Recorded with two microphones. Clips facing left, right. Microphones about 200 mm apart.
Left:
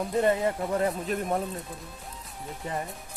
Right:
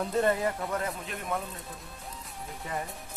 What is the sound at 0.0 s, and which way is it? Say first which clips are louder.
Speech: left 2 dB; 15° left (ahead or behind).